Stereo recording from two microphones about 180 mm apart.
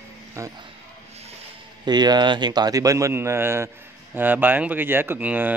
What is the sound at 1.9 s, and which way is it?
Speech, 25° right (ahead or behind).